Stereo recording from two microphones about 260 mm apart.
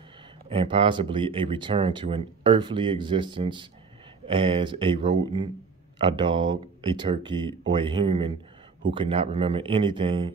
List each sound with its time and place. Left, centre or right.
0.5 s speech: right